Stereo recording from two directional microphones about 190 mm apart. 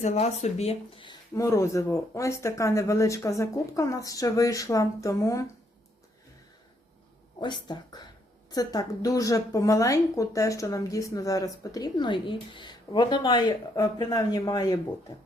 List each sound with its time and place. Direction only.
0.0 s speech: 35° left (ahead or behind)
1.4 s speech: 15° left (ahead or behind)
7.3 s a woman's voice: 20° left (ahead or behind)